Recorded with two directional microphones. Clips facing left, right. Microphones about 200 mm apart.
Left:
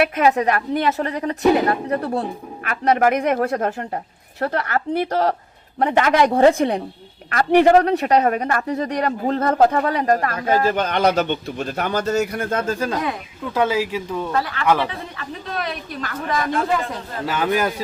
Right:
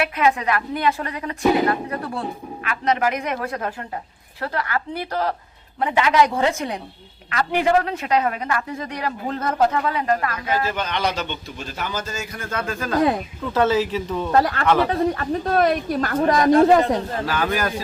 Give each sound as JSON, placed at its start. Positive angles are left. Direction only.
{"t": 0.0, "sound": "speech", "side_deg": 40}
{"t": 2.6, "sound": "a man's voice", "side_deg": 50}
{"t": 7.3, "sound": "a man's voice", "side_deg": 45}
{"t": 13.5, "sound": "speech", "side_deg": 10}
{"t": 14.3, "sound": "speech", "side_deg": -45}
{"t": 17.2, "sound": "a man's voice", "side_deg": 20}